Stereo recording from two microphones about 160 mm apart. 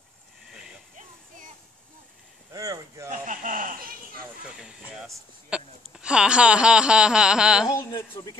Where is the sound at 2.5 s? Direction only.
20° right (ahead or behind).